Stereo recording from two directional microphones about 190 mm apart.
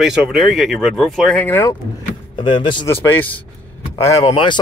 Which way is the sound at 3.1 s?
10° left (ahead or behind).